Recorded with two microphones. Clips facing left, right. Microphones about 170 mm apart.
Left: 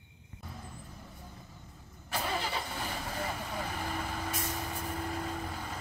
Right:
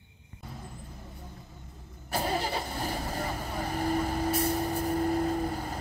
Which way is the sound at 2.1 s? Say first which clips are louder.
Right 4 dB; 40° right (ahead or behind).